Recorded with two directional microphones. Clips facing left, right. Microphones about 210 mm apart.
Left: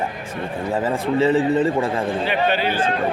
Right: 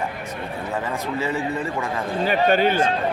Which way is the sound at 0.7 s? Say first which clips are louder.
Left 7 dB; 30° left (ahead or behind).